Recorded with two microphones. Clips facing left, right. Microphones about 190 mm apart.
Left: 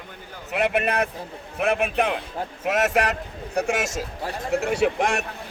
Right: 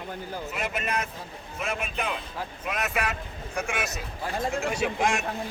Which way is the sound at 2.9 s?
75° left (ahead or behind).